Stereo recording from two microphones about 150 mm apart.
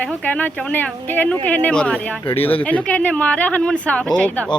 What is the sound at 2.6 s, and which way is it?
Speech, 10° left (ahead or behind).